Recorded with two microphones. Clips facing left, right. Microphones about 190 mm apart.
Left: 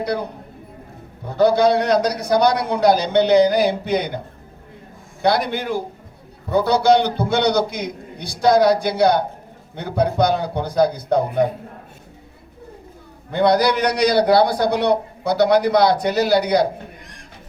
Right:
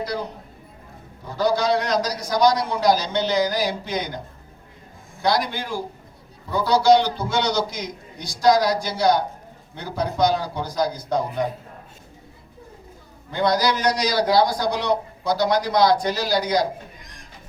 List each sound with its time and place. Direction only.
0.0 s a man's voice: 60° left (ahead or behind)
1.3 s a man's voice: 60° left (ahead or behind)
5.2 s a man's voice: 60° left (ahead or behind)
13.3 s a man's voice: 60° left (ahead or behind)